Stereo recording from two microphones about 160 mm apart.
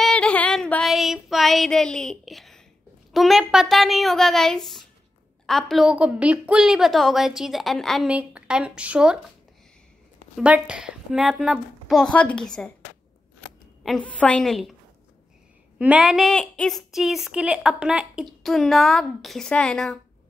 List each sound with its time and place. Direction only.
0.0 s female singing: 5° left (ahead or behind)
3.1 s a woman's voice: centre (ahead or behind)
10.3 s a woman's voice: 5° right (ahead or behind)
13.8 s a woman's voice: 5° left (ahead or behind)
15.8 s a woman's voice: 5° right (ahead or behind)